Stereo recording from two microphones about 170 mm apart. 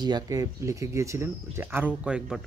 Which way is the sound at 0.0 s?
25° right (ahead or behind).